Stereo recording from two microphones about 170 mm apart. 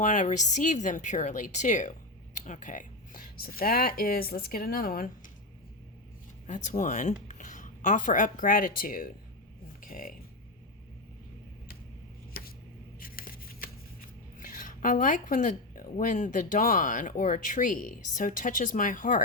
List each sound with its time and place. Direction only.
0.0 s speech: 45° left (ahead or behind)
6.5 s a woman's voice: 45° left (ahead or behind)
12.3 s a sound: 60° left (ahead or behind)
14.3 s speech: 50° left (ahead or behind)